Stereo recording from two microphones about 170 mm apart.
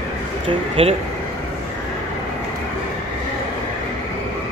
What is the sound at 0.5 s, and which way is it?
Speech, 35° right (ahead or behind).